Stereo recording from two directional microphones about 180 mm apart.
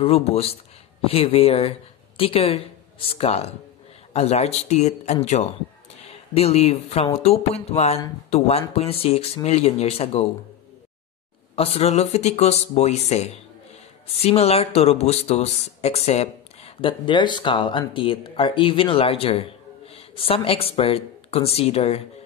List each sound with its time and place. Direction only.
0.0 s speech: 35° left (ahead or behind)
11.5 s speech: 35° left (ahead or behind)